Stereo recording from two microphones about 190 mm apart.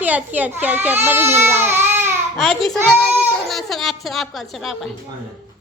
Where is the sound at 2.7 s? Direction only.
5° left (ahead or behind).